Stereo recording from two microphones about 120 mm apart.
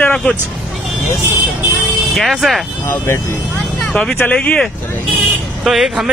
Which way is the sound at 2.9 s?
20° left (ahead or behind).